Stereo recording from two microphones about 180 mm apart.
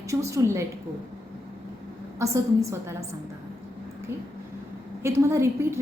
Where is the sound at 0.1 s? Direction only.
15° right (ahead or behind).